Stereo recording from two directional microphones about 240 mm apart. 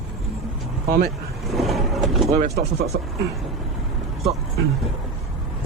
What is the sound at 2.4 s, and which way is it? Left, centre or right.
Speech, right.